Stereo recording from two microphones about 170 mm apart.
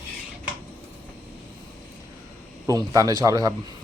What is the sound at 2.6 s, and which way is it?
Speech, 20° right (ahead or behind).